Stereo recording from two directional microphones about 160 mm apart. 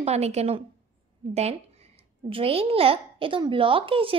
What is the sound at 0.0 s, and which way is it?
A child's voice, 40° right (ahead or behind).